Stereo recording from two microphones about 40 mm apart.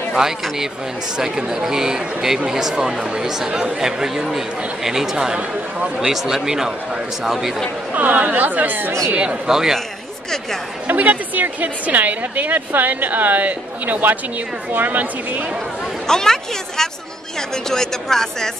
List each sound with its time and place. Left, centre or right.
0.1 s speech: centre
5.1 s speech: centre
7.9 s a woman's voice: right
9.1 s speech: right
9.5 s speech: centre
10.9 s a woman's voice: right
16.1 s speech: centre